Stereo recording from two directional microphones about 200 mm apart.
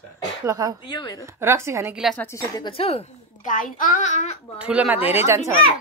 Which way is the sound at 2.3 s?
20° left (ahead or behind).